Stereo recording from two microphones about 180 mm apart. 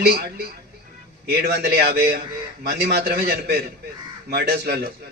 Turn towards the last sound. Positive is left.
turn(degrees=-60)  # may be behind; listen again after turning